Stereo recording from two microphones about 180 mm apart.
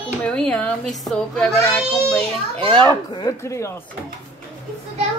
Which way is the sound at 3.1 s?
20° left (ahead or behind).